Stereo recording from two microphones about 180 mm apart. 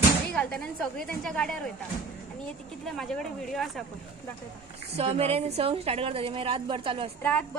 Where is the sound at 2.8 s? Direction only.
Centre (ahead or behind).